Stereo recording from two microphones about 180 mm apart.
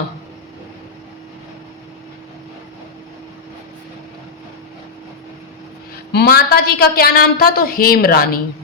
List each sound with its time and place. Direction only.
6.1 s a woman's voice: 65° left (ahead or behind)